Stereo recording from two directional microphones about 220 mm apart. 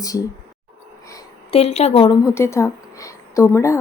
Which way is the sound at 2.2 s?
10° left (ahead or behind).